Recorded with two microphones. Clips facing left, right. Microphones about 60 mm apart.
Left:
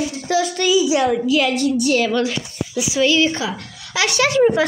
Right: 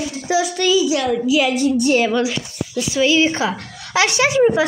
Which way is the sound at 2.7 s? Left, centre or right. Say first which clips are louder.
Even; centre.